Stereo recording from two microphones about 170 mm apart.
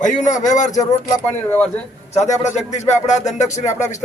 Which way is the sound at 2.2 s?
40° left (ahead or behind).